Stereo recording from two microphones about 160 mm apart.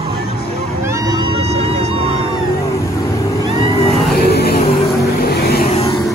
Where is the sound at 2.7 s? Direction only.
20° left (ahead or behind).